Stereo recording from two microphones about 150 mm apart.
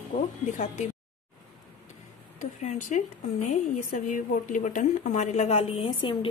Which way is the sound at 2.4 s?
50° left (ahead or behind).